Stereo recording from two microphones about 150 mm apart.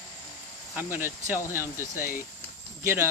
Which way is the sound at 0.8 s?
15° right (ahead or behind).